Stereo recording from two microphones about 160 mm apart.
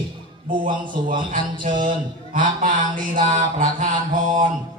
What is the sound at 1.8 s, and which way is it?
Mantra, 55° right (ahead or behind).